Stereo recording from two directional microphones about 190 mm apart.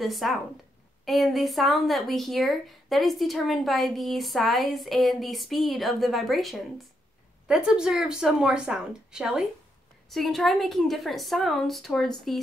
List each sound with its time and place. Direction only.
0.0 s a woman's voice: centre (ahead or behind)